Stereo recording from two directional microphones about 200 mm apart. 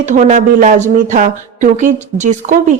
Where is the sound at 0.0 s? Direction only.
40° right (ahead or behind).